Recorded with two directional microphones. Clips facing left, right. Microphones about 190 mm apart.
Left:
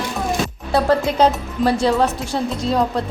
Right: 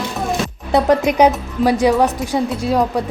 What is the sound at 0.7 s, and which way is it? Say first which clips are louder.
Speech: right 3 dB; 20° right (ahead or behind).